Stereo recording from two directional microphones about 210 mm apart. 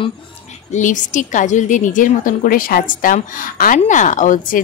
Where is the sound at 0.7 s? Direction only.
35° left (ahead or behind).